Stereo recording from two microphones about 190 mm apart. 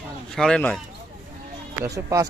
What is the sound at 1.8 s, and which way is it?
Speech, 15° right (ahead or behind).